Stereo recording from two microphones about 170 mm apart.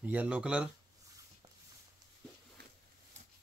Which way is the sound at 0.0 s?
10° right (ahead or behind).